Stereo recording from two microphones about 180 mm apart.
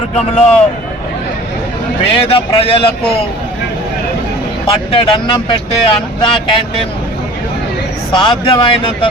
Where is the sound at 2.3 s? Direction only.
30° left (ahead or behind).